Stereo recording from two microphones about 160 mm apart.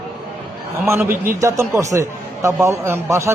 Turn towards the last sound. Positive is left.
turn(degrees=-15)  # may be behind; listen again after turning